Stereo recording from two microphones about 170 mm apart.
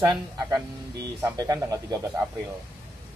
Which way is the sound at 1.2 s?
20° right (ahead or behind).